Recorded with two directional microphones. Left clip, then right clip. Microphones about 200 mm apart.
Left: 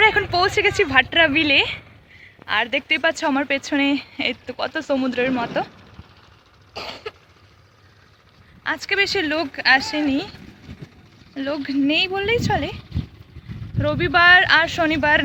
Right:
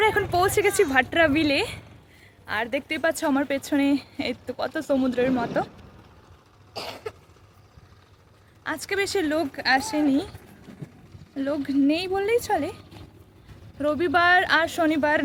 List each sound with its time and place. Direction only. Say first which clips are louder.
0.0 s speech: left 5 dB; centre (ahead or behind)
6.7 s cough: left 3 dB; 25° left (ahead or behind)
8.6 s speech: left 6 dB; centre (ahead or behind)
11.3 s speech: left 1 dB; centre (ahead or behind)
13.7 s speech: left 4 dB; 5° right (ahead or behind)